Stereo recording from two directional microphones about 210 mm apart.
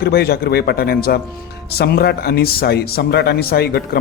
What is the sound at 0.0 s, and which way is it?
Speech, 50° left (ahead or behind).